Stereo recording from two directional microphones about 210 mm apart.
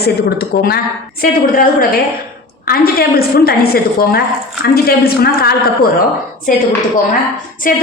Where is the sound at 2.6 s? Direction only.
45° left (ahead or behind).